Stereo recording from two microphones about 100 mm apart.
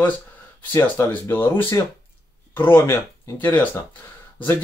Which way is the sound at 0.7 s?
20° left (ahead or behind).